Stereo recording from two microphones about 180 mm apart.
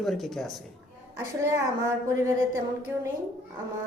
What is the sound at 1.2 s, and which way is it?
A woman's voice, 15° right (ahead or behind).